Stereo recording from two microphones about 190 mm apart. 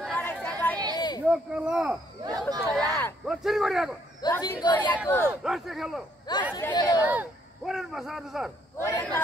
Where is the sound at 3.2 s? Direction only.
5° right (ahead or behind).